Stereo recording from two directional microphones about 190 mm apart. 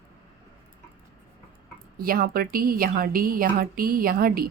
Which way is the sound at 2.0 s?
50° right (ahead or behind).